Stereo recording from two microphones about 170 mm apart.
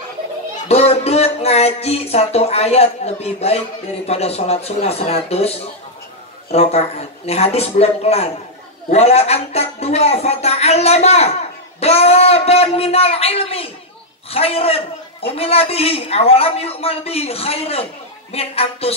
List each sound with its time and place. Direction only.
0.7 s speech: 35° left (ahead or behind)
6.5 s speech: 35° left (ahead or behind)